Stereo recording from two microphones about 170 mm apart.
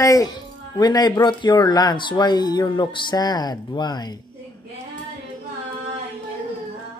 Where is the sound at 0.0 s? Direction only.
20° left (ahead or behind).